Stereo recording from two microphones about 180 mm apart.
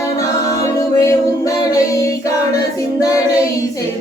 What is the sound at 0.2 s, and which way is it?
A capella, 20° left (ahead or behind).